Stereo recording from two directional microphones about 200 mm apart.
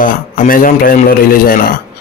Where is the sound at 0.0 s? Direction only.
45° left (ahead or behind).